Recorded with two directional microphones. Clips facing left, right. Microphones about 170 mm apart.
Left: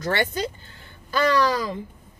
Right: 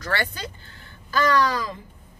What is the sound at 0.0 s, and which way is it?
Speech, 25° left (ahead or behind).